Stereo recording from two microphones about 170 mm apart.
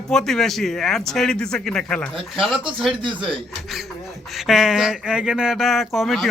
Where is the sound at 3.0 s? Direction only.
30° right (ahead or behind).